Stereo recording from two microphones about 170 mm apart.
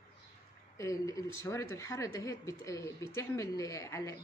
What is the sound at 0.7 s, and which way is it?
A woman's voice, 20° left (ahead or behind).